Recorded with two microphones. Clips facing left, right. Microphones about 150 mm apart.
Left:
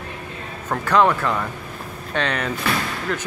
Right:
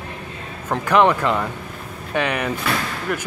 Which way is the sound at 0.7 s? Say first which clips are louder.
Right 1 dB; 15° right (ahead or behind).